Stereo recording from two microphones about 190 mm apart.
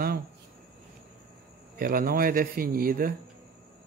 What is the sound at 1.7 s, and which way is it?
Speech, 50° right (ahead or behind).